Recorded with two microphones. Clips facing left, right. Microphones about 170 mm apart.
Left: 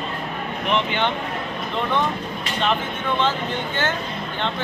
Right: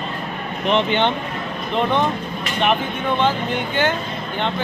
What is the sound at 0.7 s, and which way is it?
Speech, 25° right (ahead or behind).